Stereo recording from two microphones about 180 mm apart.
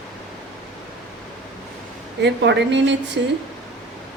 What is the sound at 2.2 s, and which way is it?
Speech, 75° right (ahead or behind).